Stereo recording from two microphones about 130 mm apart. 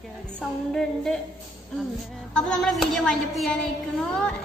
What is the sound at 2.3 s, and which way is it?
A woman's voice, 5° left (ahead or behind).